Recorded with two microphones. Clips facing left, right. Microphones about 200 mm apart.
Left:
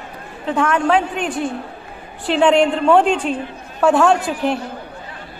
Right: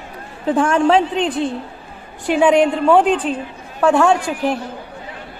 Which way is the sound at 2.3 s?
10° right (ahead or behind).